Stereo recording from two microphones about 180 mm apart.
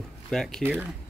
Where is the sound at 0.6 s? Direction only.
10° right (ahead or behind).